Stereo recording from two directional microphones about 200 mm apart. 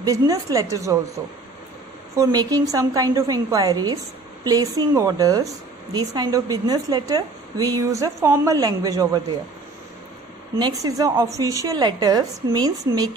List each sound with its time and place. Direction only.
0.0 s a woman's voice: 15° right (ahead or behind)
2.1 s a woman's voice: 15° right (ahead or behind)
10.5 s a woman's voice: 20° right (ahead or behind)